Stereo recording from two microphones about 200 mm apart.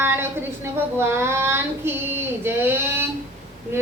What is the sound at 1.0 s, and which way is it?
Child singing, 10° right (ahead or behind).